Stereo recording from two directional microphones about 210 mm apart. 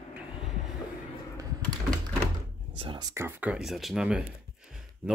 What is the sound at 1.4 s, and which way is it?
Computer keyboard, 20° right (ahead or behind).